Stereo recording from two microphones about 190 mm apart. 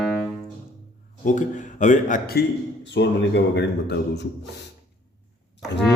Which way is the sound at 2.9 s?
65° left (ahead or behind).